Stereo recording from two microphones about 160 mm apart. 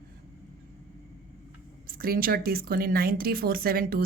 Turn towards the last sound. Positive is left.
turn(degrees=-65)  # may be behind; listen again after turning